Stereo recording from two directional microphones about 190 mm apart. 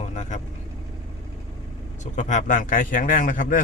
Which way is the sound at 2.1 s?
40° left (ahead or behind).